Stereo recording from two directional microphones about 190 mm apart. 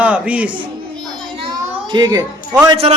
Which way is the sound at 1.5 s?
20° right (ahead or behind).